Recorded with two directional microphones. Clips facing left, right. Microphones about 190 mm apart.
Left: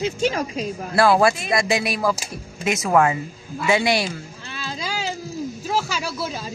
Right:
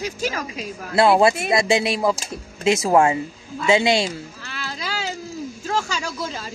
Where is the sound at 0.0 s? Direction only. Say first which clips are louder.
Left 4 dB; 35° left (ahead or behind).